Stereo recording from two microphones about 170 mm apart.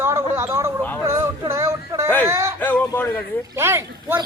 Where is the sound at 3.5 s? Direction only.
15° right (ahead or behind).